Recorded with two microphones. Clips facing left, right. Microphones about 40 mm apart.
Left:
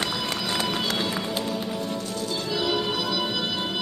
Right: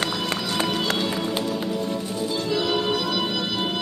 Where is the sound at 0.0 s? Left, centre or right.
Right.